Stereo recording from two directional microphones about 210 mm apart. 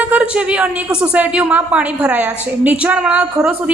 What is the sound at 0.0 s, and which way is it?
A woman's voice, 5° right (ahead or behind).